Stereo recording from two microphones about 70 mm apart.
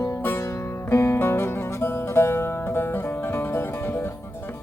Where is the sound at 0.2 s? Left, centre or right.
Left.